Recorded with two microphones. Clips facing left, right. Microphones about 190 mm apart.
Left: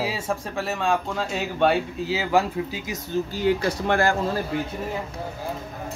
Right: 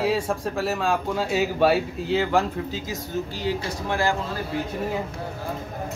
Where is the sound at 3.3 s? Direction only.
55° left (ahead or behind).